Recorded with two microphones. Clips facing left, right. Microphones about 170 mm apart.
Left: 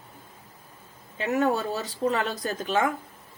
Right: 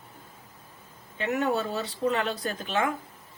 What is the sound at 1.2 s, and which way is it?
Speech, 35° left (ahead or behind).